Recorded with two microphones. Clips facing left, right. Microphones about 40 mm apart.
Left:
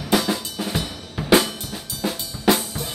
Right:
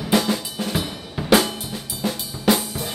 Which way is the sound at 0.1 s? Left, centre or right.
Centre.